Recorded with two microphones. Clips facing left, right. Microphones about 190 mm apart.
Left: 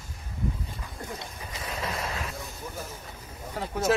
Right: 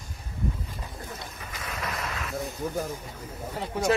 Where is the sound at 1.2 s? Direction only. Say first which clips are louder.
Left 1 dB; 25° left (ahead or behind).